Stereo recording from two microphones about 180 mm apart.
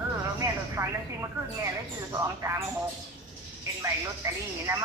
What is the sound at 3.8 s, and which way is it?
Speech, 15° right (ahead or behind).